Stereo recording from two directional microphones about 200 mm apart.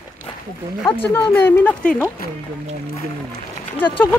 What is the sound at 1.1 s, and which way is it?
Speech, 10° left (ahead or behind).